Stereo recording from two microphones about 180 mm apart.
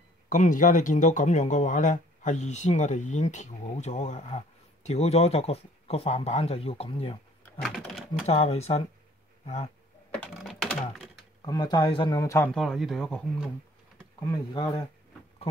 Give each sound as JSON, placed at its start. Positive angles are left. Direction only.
{"t": 0.3, "sound": "speech", "side_deg": 45}
{"t": 7.6, "sound": "speech", "side_deg": 0}
{"t": 8.3, "sound": "speech", "side_deg": 35}
{"t": 10.1, "sound": "typing", "side_deg": 0}
{"t": 11.4, "sound": "speech", "side_deg": 20}
{"t": 12.5, "sound": "speech", "side_deg": 0}
{"t": 14.2, "sound": "speech", "side_deg": 20}